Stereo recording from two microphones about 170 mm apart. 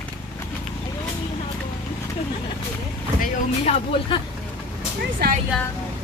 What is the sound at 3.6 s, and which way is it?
Speech, 40° left (ahead or behind).